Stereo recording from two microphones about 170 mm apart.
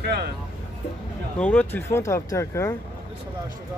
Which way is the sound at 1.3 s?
10° left (ahead or behind).